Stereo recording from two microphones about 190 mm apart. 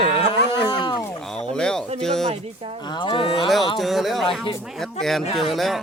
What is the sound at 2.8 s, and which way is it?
Speech, 25° left (ahead or behind).